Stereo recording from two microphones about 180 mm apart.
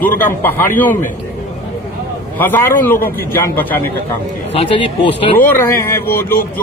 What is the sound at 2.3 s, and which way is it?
A man's voice, 10° left (ahead or behind).